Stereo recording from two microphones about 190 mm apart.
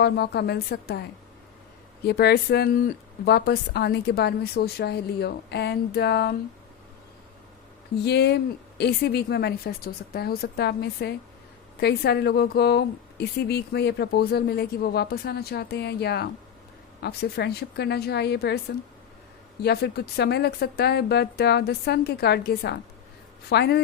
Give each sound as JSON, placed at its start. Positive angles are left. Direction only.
{"t": 0.0, "sound": "a woman's voice", "side_deg": 60}
{"t": 2.0, "sound": "a woman's voice", "side_deg": 55}
{"t": 8.0, "sound": "a woman's voice", "side_deg": 60}
{"t": 19.6, "sound": "a woman's voice", "side_deg": 60}